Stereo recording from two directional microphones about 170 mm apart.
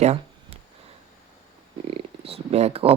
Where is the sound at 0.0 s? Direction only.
40° right (ahead or behind).